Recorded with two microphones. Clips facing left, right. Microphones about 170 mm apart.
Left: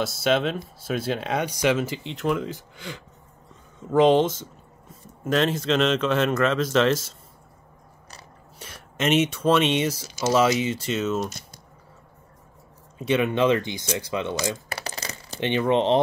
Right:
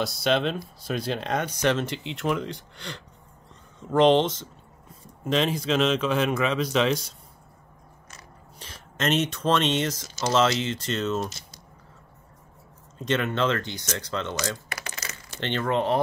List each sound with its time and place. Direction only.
0.0 s speech: centre (ahead or behind)
8.5 s speech: 5° left (ahead or behind)
13.0 s speech: 10° left (ahead or behind)
14.7 s a sound: 35° left (ahead or behind)
15.4 s speech: 15° left (ahead or behind)